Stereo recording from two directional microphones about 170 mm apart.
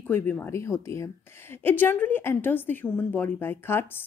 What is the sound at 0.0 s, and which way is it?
A woman's voice, 10° left (ahead or behind).